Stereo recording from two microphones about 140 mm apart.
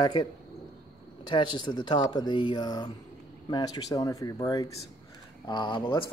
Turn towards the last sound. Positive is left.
turn(degrees=35)  # may be behind; listen again after turning